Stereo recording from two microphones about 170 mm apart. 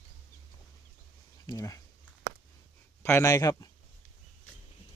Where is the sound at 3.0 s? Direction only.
15° left (ahead or behind).